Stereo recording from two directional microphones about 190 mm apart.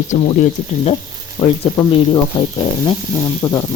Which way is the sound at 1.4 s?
20° left (ahead or behind).